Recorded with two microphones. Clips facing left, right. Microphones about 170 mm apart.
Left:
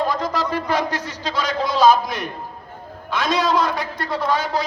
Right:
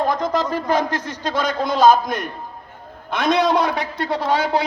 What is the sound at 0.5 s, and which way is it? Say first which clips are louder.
A man's voice: right 2 dB; 50° right (ahead or behind).